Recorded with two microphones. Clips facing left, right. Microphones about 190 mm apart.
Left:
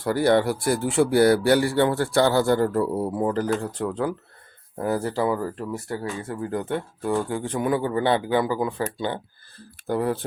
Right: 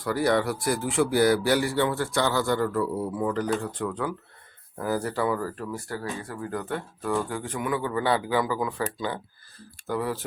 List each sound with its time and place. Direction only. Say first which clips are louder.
0.0 s speech: left 4 dB; 30° left (ahead or behind)